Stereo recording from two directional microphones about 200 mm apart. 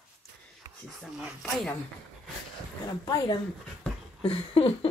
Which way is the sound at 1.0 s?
Centre (ahead or behind).